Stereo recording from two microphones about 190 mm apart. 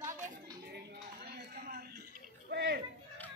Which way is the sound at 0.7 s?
60° right (ahead or behind).